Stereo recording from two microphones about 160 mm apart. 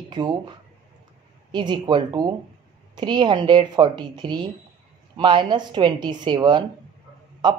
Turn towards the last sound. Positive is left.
turn(degrees=-25)  # may be behind; listen again after turning